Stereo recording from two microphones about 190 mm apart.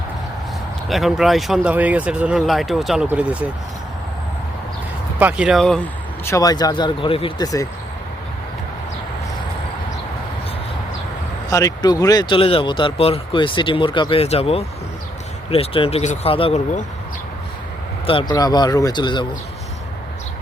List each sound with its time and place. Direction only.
0.9 s speech: centre (ahead or behind)
5.2 s speech: 5° right (ahead or behind)
6.2 s speech: 15° left (ahead or behind)
11.4 s speech: 20° left (ahead or behind); by 16.8 s 35° left (ahead or behind)
18.0 s speech: 25° left (ahead or behind)